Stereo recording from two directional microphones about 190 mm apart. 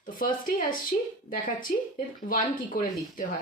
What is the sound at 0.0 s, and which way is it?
A woman's voice, 50° left (ahead or behind).